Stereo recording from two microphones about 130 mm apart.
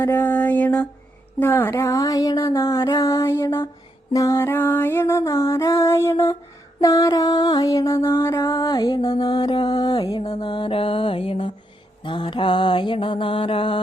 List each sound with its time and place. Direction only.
0.0 s music: 15° left (ahead or behind)
10.3 s mantra: 40° left (ahead or behind)